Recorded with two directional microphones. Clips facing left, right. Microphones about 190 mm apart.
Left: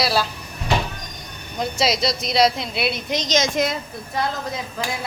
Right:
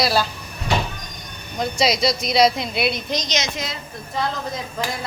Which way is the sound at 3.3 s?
50° left (ahead or behind).